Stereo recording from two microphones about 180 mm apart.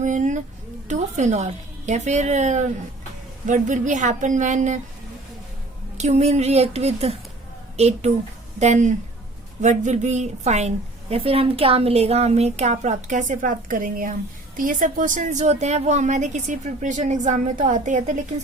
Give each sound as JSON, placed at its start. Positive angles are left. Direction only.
{"t": 0.0, "sound": "a woman's voice", "side_deg": -45}
{"t": 6.0, "sound": "a woman's voice", "side_deg": -35}